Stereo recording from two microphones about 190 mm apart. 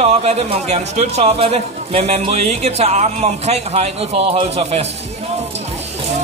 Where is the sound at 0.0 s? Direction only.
35° right (ahead or behind).